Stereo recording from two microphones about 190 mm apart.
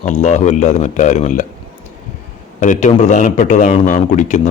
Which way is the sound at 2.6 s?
40° left (ahead or behind).